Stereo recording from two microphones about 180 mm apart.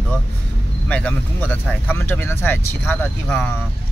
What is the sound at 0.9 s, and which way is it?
Speech, 10° left (ahead or behind).